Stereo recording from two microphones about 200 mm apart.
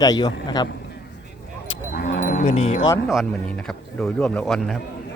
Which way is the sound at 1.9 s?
45° left (ahead or behind).